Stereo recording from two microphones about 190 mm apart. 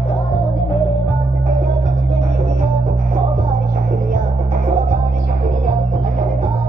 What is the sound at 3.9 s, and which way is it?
Music, 45° right (ahead or behind).